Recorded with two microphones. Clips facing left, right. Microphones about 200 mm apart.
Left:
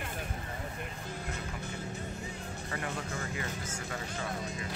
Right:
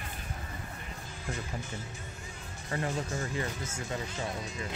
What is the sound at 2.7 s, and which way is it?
Speech, 25° right (ahead or behind).